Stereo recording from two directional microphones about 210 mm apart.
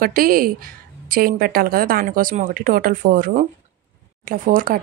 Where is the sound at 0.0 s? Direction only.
45° right (ahead or behind).